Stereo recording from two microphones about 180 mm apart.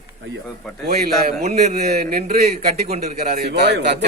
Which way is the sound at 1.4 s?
40° right (ahead or behind).